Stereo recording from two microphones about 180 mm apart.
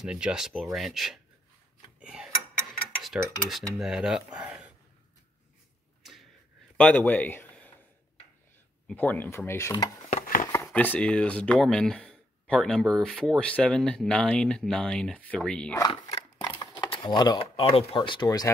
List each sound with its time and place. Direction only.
0.0 s speech: 5° right (ahead or behind)
2.0 s tick-tock: 5° right (ahead or behind)
3.0 s cutlery: centre (ahead or behind)
3.8 s speech: 5° right (ahead or behind)
6.8 s a man's voice: 10° left (ahead or behind)
8.8 s speech: 10° left (ahead or behind)
10.0 s a sound: 45° left (ahead or behind)
10.5 s speech: 10° left (ahead or behind)
15.8 s speech: 20° left (ahead or behind)
16.2 s a sound: 25° left (ahead or behind)